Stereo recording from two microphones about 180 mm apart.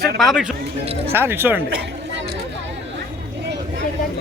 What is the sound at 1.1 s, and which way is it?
Speech, 10° right (ahead or behind).